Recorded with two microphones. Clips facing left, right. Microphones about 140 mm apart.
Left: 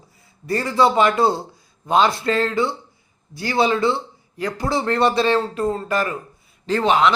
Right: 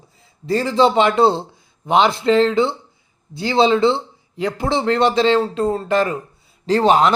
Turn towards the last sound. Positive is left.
turn(degrees=-40)  # may be behind; listen again after turning